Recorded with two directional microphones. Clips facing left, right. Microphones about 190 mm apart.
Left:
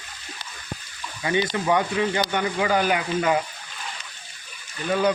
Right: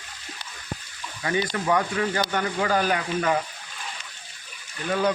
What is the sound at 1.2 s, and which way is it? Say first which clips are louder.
Speech: left 2 dB; 20° left (ahead or behind).